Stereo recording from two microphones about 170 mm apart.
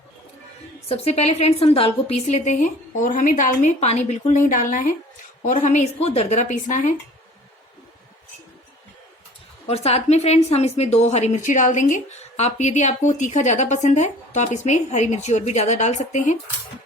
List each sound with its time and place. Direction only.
0.9 s a woman's voice: 35° left (ahead or behind)
9.6 s a woman's voice: 40° left (ahead or behind)